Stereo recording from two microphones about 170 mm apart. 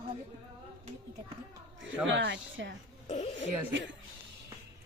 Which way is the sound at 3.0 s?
40° left (ahead or behind).